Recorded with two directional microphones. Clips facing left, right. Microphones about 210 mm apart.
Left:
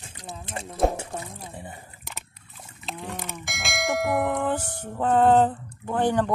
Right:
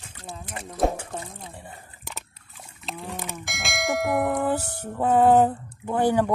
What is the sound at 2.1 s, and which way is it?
Trickle, centre (ahead or behind).